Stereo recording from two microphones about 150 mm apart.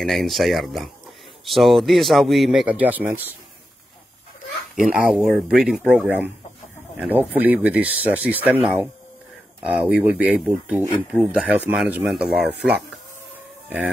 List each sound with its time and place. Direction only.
0.0 s speech: centre (ahead or behind)
4.8 s speech: 5° right (ahead or behind)